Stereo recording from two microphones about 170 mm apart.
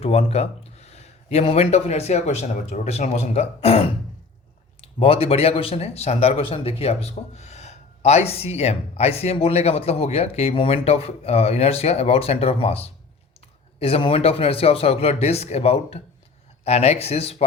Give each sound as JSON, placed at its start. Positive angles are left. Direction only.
{"t": 0.0, "sound": "speech", "side_deg": 40}